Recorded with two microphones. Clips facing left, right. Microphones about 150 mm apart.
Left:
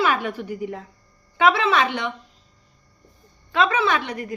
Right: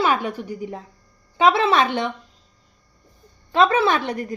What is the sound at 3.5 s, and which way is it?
Speech, 35° right (ahead or behind).